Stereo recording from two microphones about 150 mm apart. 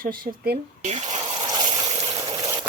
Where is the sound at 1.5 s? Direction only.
30° right (ahead or behind).